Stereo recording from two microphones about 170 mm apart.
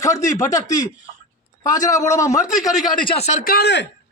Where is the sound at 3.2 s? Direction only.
50° left (ahead or behind); by 3.8 s 85° left.